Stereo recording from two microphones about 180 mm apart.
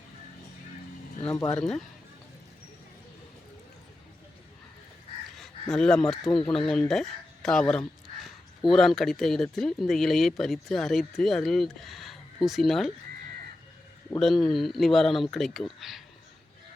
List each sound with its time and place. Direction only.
1.3 s speech: 20° left (ahead or behind)
5.7 s speech: 5° left (ahead or behind)
14.2 s speech: centre (ahead or behind)